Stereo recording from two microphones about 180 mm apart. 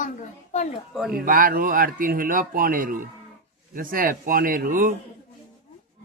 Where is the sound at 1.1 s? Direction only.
50° right (ahead or behind).